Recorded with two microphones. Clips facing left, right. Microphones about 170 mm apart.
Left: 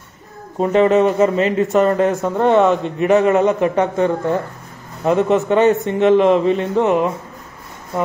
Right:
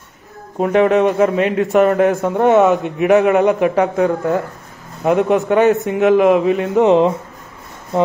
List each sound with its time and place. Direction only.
0.6 s speech: centre (ahead or behind)
6.8 s speech: 25° right (ahead or behind)